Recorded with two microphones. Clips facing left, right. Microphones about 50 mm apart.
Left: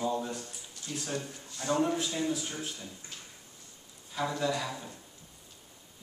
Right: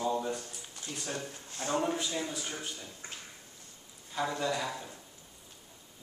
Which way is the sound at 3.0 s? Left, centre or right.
Right.